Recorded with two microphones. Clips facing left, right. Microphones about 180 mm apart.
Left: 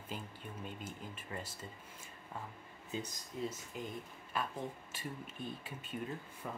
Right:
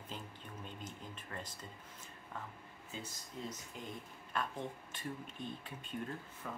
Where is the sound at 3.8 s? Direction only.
5° left (ahead or behind).